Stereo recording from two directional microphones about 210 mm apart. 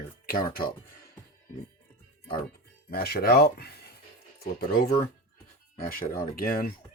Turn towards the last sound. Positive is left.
turn(degrees=45)  # may be behind; listen again after turning